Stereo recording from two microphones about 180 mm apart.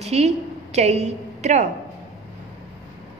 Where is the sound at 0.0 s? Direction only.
35° right (ahead or behind).